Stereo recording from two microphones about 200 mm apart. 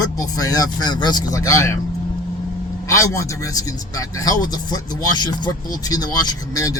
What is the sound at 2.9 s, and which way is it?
Speech, 15° left (ahead or behind).